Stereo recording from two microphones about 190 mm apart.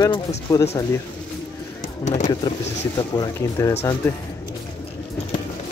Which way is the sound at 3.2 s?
15° left (ahead or behind).